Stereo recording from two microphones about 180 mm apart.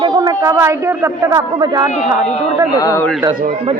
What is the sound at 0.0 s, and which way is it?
A woman's voice, 20° right (ahead or behind).